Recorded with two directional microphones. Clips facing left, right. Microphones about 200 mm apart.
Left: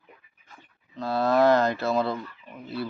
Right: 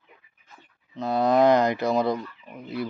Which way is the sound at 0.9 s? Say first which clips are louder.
Right 2 dB; 20° right (ahead or behind).